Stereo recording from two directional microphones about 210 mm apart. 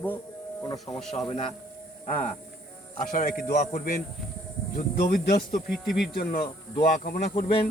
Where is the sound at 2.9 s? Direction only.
40° left (ahead or behind).